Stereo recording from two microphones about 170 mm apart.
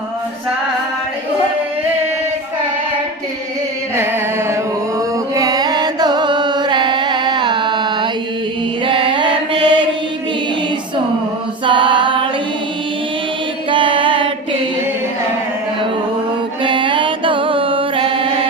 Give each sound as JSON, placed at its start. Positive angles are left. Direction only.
{"t": 3.9, "sound": "music", "side_deg": -15}
{"t": 8.8, "sound": "mantra", "side_deg": -30}
{"t": 11.6, "sound": "female singing", "side_deg": -30}
{"t": 13.7, "sound": "mantra", "side_deg": -30}
{"t": 16.6, "sound": "mantra", "side_deg": -30}